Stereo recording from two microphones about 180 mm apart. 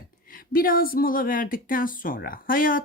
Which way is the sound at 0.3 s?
50° left (ahead or behind).